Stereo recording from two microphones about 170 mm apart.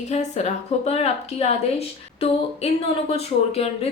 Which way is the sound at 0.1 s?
40° left (ahead or behind).